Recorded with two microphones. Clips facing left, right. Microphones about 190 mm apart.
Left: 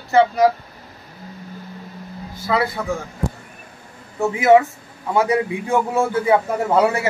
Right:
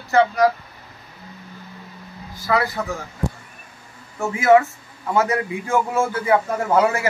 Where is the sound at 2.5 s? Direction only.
15° left (ahead or behind).